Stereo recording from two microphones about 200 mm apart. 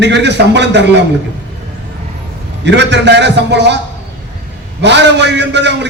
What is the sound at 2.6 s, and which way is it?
A man's voice, 60° right (ahead or behind).